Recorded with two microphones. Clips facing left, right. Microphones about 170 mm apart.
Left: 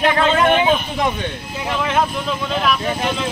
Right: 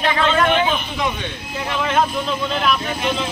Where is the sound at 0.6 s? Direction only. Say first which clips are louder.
Left 4 dB; 45° left (ahead or behind).